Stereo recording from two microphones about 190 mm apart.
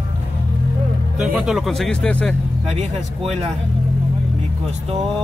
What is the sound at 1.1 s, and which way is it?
Speech, 5° right (ahead or behind).